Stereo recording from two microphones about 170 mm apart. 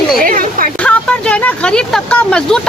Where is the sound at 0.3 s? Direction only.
55° right (ahead or behind).